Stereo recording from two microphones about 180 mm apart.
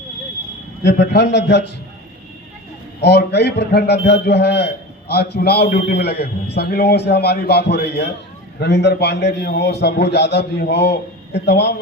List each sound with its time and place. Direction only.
0.9 s a man's voice: 70° left (ahead or behind)
3.0 s a man's voice: 65° left (ahead or behind)